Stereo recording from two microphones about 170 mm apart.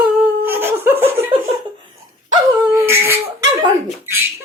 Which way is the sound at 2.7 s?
15° right (ahead or behind).